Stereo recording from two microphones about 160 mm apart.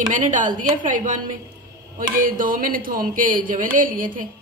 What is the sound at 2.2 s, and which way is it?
A woman's voice, 60° right (ahead or behind).